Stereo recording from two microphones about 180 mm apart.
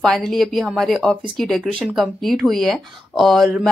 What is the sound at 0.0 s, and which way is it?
Speech, centre (ahead or behind).